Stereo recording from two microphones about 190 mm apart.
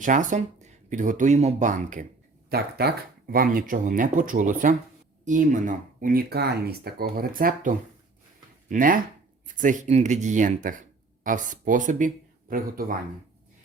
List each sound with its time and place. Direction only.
0.0 s speech: 40° right (ahead or behind)
2.5 s speech: 55° right (ahead or behind)
8.7 s speech: 45° right (ahead or behind)